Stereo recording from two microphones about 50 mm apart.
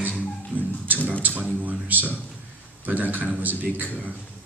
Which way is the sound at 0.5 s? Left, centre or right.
Right.